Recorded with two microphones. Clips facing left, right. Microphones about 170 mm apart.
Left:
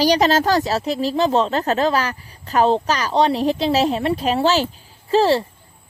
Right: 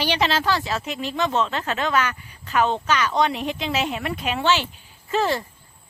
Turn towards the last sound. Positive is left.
turn(degrees=30)  # may be behind; listen again after turning